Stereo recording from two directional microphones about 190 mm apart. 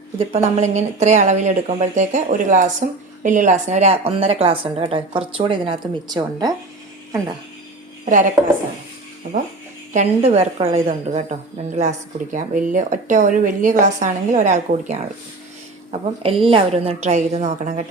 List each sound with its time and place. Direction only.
0.2 s a woman's voice: 35° right (ahead or behind)
9.9 s a woman's voice: 35° right (ahead or behind)